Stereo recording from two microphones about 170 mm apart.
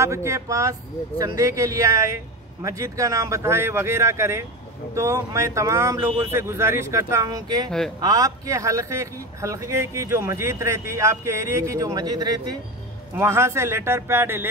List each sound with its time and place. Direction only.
0.0 s a man's voice: 15° right (ahead or behind)